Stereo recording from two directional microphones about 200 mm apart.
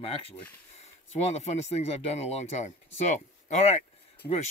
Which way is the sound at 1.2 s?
35° left (ahead or behind).